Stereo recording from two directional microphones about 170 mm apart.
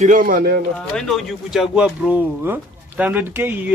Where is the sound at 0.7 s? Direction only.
5° left (ahead or behind).